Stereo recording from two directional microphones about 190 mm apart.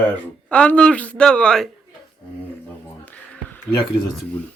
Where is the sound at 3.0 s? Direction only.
5° left (ahead or behind).